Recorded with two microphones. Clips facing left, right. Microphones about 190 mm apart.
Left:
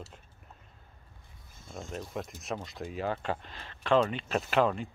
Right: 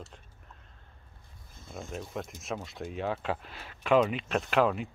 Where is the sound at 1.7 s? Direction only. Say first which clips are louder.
Even; centre (ahead or behind).